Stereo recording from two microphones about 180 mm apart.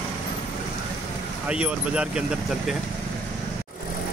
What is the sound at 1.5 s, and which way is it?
Speech, 5° right (ahead or behind).